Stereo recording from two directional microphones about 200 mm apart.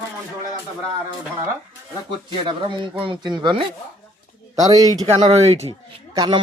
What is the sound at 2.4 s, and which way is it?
Speech, 25° right (ahead or behind).